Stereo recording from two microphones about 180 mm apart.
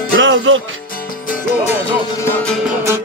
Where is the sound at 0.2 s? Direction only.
90° right.